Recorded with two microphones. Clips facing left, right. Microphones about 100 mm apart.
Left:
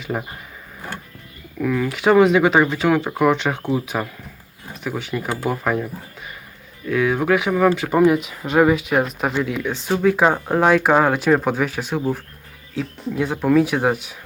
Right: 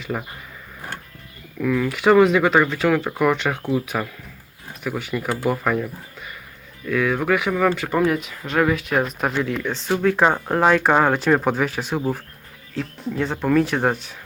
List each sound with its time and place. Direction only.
1.6 s speech: 5° left (ahead or behind)
6.8 s speech: 5° left (ahead or behind)